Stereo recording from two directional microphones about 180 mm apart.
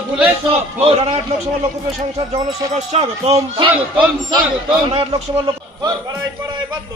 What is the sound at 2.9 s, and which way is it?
Speech, 35° right (ahead or behind).